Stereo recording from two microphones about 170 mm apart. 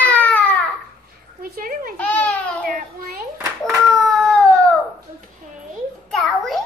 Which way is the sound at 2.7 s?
50° right (ahead or behind).